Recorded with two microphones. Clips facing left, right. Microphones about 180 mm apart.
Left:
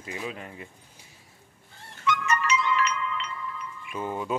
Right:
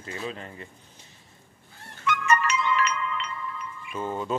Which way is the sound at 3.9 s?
10° left (ahead or behind).